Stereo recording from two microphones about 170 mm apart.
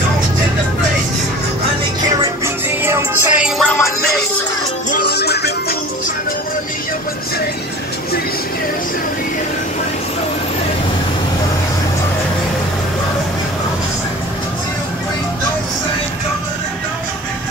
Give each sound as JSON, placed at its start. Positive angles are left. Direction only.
{"t": 2.4, "sound": "music", "side_deg": -15}
{"t": 4.9, "sound": "music", "side_deg": 70}